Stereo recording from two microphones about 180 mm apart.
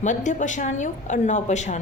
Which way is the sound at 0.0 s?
40° left (ahead or behind).